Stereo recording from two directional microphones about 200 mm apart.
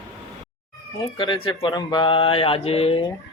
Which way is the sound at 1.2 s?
25° left (ahead or behind).